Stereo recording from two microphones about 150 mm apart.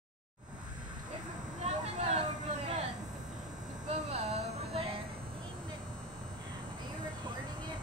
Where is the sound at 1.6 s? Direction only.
45° right (ahead or behind).